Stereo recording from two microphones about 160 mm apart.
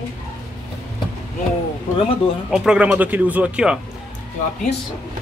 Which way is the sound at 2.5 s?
5° right (ahead or behind).